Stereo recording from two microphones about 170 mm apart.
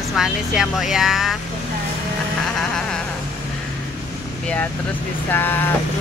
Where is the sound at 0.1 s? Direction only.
Centre (ahead or behind).